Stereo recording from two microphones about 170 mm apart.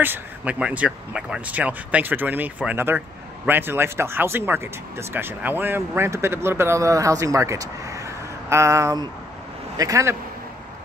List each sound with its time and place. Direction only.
0.0 s speech: 10° right (ahead or behind)